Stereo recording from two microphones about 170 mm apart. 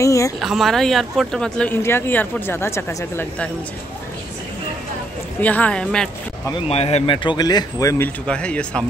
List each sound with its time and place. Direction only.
0.0 s speech: 20° left (ahead or behind)
0.4 s speech: centre (ahead or behind); by 3.3 s 15° left (ahead or behind)
5.4 s speech: 10° left (ahead or behind)
6.7 s speech: 40° left (ahead or behind)
7.2 s speech: 25° left (ahead or behind)
8.3 s speech: 5° left (ahead or behind)